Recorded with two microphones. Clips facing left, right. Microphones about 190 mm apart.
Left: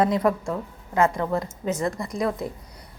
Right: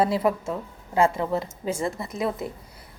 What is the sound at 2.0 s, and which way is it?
Speech, 5° right (ahead or behind).